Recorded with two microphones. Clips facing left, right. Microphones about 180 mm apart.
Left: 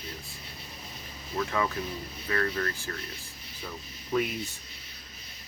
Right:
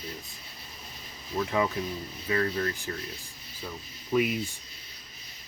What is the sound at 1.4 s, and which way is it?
Speech, 20° right (ahead or behind).